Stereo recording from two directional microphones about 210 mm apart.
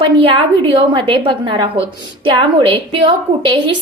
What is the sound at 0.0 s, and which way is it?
A woman's voice, 25° right (ahead or behind).